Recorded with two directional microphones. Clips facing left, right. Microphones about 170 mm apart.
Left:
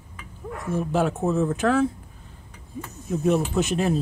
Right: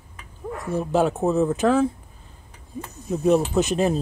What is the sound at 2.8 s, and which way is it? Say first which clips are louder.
Speech: right 1 dB; 20° right (ahead or behind).